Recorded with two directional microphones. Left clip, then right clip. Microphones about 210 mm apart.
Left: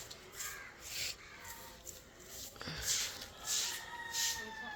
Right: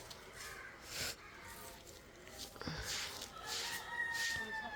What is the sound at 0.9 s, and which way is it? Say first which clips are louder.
Crow: left 2 dB; 30° right (ahead or behind).